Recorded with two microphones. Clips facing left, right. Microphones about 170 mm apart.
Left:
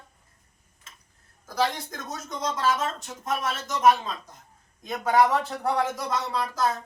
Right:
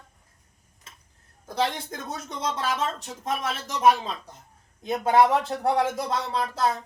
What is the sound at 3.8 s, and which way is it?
Speech, 30° right (ahead or behind).